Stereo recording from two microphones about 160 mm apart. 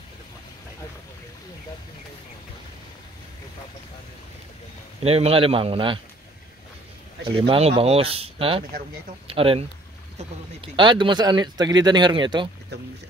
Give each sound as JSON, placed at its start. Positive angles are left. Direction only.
{"t": 5.0, "sound": "speech", "side_deg": -40}
{"t": 7.2, "sound": "speech", "side_deg": -30}